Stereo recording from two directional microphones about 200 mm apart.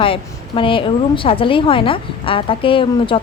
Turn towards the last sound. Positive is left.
turn(degrees=25)  # may be behind; listen again after turning